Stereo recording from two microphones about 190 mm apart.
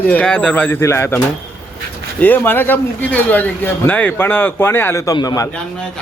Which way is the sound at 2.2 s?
10° left (ahead or behind).